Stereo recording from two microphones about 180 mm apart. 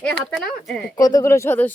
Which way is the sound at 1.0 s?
20° left (ahead or behind).